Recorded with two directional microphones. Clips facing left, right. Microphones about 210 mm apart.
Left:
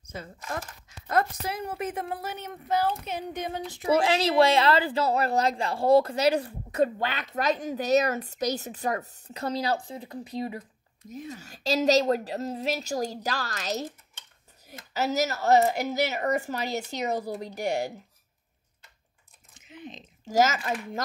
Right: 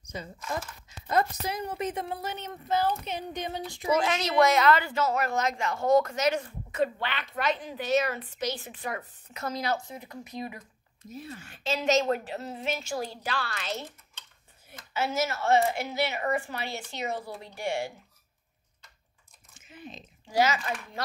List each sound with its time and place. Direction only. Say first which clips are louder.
1.5 s speech: even; 5° left (ahead or behind)
3.9 s a woman's voice: left 3 dB; 30° left (ahead or behind)
11.0 s speech: left 2 dB; 15° left (ahead or behind)
11.3 s a woman's voice: left 5 dB; 40° left (ahead or behind)
19.7 s a sound: left 2 dB; 20° left (ahead or behind)
20.2 s speech: left 2 dB; 45° left (ahead or behind)